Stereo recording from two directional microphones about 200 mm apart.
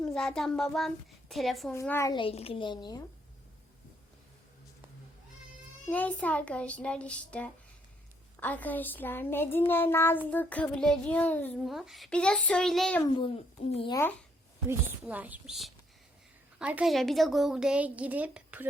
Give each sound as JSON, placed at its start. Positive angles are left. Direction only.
{"t": 0.0, "sound": "a woman's voice", "side_deg": 5}
{"t": 1.7, "sound": "a child's voice", "side_deg": 15}
{"t": 5.9, "sound": "a child's voice", "side_deg": 5}
{"t": 13.1, "sound": "a child's voice", "side_deg": 30}
{"t": 14.7, "sound": "a woman's voice", "side_deg": -10}